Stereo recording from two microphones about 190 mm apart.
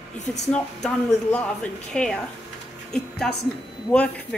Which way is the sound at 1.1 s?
5° left (ahead or behind).